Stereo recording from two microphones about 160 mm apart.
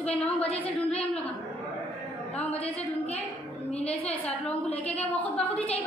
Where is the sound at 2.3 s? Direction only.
10° left (ahead or behind).